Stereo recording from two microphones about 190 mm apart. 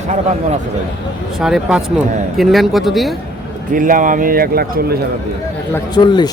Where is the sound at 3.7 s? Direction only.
45° right (ahead or behind).